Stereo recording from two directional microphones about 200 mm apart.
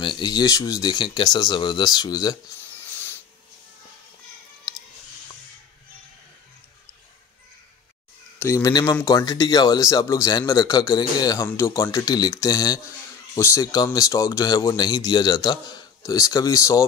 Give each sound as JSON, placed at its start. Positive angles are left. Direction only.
{"t": 0.0, "sound": "speech", "side_deg": 20}
{"t": 8.4, "sound": "speech", "side_deg": 10}